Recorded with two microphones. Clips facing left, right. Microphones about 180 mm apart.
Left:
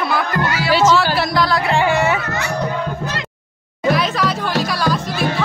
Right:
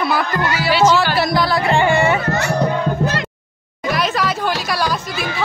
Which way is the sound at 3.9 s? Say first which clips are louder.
Even; centre (ahead or behind).